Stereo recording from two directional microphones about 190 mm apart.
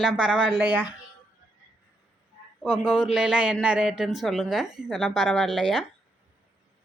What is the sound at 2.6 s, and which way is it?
A man's voice, centre (ahead or behind).